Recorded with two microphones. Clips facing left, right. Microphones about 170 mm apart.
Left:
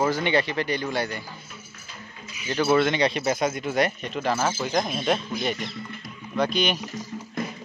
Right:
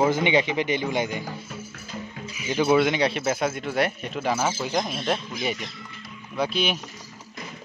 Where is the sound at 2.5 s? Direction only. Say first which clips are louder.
Right 1 dB; 15° right (ahead or behind).